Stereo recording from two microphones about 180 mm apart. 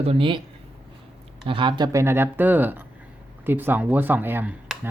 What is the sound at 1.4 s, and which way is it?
Speech, 25° right (ahead or behind).